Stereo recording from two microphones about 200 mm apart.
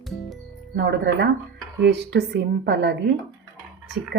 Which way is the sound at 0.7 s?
60° right (ahead or behind).